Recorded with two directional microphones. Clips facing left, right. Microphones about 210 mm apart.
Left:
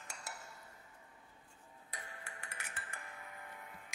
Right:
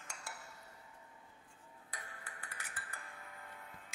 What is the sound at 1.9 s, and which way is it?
Music, 25° left (ahead or behind).